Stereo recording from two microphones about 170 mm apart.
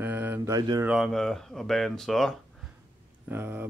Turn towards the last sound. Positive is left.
turn(degrees=-15)  # may be behind; listen again after turning